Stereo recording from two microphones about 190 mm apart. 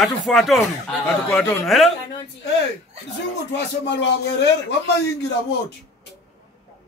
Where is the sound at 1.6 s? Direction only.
Centre (ahead or behind).